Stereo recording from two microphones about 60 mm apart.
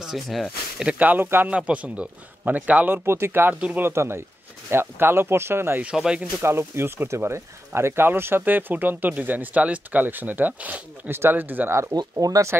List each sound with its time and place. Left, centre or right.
0.0 s speech: centre
0.8 s speech: right
1.2 s speech: right
1.5 s speech: right
3.1 s speech: right
5.9 s speech: centre
6.4 s speech: right
11.1 s speech: right
11.9 s speech: right